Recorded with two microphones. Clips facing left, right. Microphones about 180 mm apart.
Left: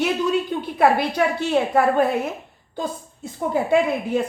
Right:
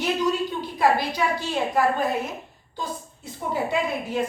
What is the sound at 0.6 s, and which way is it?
A woman's voice, 55° left (ahead or behind).